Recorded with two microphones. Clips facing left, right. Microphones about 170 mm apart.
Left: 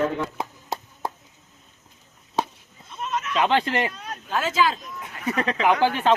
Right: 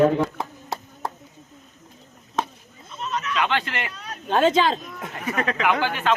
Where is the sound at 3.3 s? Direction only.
30° left (ahead or behind).